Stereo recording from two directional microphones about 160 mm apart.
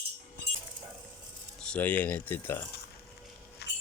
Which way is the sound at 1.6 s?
5° left (ahead or behind).